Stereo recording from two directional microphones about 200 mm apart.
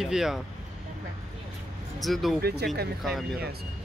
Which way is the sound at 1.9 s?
Centre (ahead or behind).